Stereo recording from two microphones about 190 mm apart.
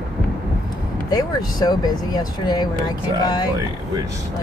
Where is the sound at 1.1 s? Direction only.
20° left (ahead or behind).